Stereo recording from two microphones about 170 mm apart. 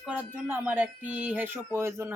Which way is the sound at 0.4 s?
10° right (ahead or behind).